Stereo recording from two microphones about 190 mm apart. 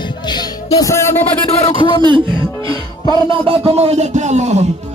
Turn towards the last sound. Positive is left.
turn(degrees=-35)  # may be behind; listen again after turning